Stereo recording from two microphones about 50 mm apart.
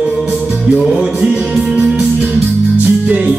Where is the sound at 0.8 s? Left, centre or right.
Centre.